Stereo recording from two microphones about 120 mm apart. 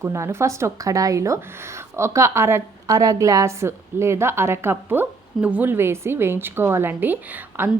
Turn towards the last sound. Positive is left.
turn(degrees=-15)  # may be behind; listen again after turning